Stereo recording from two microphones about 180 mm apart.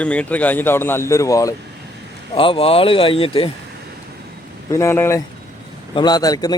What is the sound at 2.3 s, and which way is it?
Speech, 30° left (ahead or behind).